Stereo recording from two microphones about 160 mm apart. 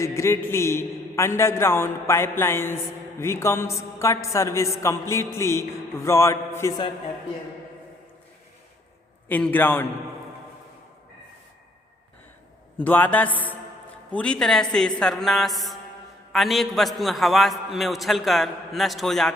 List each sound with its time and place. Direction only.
0.0 s a man's voice: 15° left (ahead or behind)
9.3 s a man's voice: 10° left (ahead or behind)
12.7 s a man's voice: 10° left (ahead or behind)